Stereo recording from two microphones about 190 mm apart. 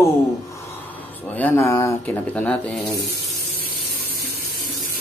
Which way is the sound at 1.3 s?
10° left (ahead or behind).